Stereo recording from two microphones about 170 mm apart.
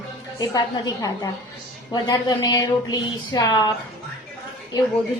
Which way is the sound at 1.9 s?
20° left (ahead or behind).